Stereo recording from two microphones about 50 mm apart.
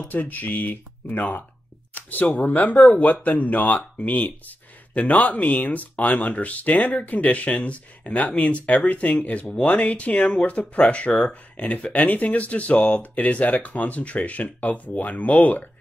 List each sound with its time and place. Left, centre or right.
0.1 s speech: left
2.0 s a sound: left
2.4 s speech: left